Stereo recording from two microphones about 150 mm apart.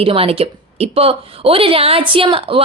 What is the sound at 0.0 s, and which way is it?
A woman's voice, 40° right (ahead or behind).